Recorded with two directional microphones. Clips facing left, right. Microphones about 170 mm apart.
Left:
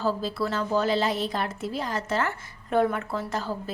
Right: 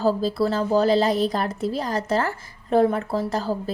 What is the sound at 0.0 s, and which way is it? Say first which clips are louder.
A woman's voice: right 6 dB; 35° right (ahead or behind).